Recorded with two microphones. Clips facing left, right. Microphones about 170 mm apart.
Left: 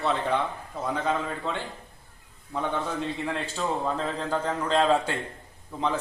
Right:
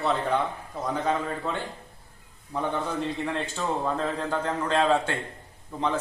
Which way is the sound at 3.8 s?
Centre (ahead or behind).